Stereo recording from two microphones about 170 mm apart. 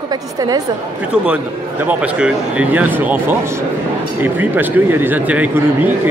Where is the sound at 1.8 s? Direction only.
5° right (ahead or behind).